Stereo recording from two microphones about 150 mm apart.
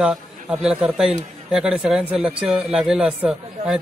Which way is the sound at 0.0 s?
5° right (ahead or behind).